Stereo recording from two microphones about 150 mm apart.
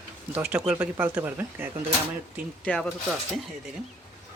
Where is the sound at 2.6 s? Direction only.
10° left (ahead or behind).